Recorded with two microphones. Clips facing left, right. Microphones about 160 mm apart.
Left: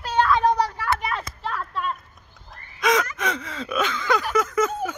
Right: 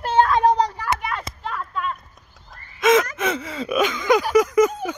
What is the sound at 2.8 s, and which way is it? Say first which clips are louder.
Gasp: right 5 dB; 5° right (ahead or behind).